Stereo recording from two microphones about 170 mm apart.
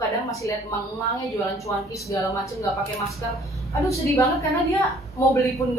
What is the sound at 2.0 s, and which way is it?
Speech, 20° left (ahead or behind).